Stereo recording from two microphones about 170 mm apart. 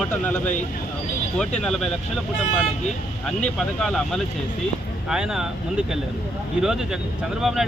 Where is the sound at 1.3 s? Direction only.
5° left (ahead or behind).